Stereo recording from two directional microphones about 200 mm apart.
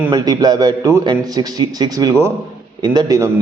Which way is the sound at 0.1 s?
20° right (ahead or behind).